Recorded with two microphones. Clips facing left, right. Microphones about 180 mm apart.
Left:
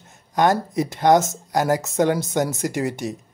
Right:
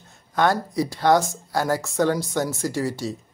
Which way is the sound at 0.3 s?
15° left (ahead or behind).